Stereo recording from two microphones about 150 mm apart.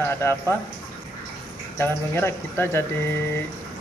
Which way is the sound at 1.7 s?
20° left (ahead or behind).